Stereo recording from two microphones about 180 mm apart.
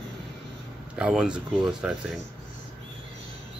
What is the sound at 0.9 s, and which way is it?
Speech, 5° right (ahead or behind).